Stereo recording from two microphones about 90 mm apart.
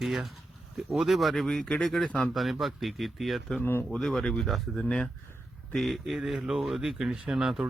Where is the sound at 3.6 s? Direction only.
25° left (ahead or behind).